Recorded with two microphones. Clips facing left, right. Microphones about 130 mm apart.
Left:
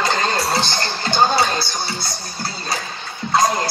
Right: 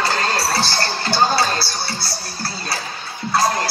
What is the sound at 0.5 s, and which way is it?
Music, 20° left (ahead or behind).